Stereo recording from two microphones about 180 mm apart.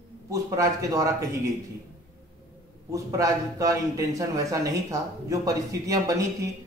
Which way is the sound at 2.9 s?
15° right (ahead or behind).